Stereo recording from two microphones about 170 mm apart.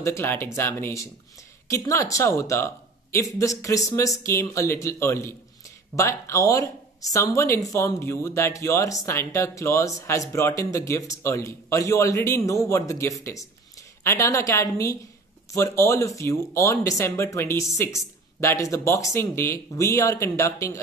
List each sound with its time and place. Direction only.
0.0 s speech: 15° left (ahead or behind)